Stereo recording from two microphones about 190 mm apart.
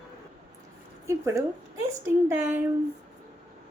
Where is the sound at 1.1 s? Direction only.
15° right (ahead or behind).